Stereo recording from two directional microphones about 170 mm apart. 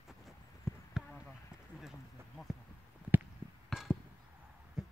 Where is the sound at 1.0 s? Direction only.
5° right (ahead or behind).